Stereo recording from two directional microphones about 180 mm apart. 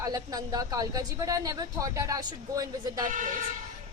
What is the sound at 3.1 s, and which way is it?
Speech, 45° right (ahead or behind).